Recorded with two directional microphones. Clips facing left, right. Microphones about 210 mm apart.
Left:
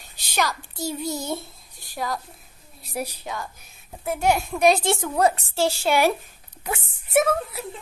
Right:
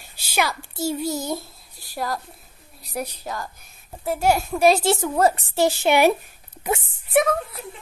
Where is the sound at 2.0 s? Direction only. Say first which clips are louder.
Right 1 dB; centre (ahead or behind).